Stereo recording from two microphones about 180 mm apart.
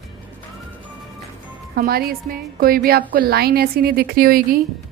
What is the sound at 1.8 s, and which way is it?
A woman's voice, 55° right (ahead or behind).